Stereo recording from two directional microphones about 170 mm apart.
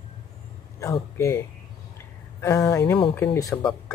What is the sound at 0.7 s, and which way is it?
Speech, 20° left (ahead or behind).